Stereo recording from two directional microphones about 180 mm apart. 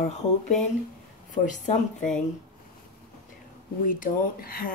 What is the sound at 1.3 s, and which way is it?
Speech, 45° left (ahead or behind).